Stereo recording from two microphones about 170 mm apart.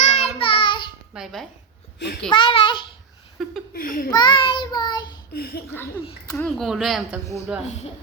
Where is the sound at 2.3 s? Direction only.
30° left (ahead or behind).